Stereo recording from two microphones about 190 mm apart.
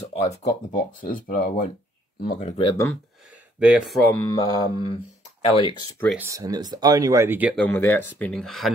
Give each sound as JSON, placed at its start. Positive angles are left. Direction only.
{"t": 0.2, "sound": "speech", "side_deg": 40}
{"t": 2.4, "sound": "speech", "side_deg": 30}
{"t": 3.5, "sound": "speech", "side_deg": -5}
{"t": 6.1, "sound": "speech", "side_deg": -15}
{"t": 7.5, "sound": "speech", "side_deg": 10}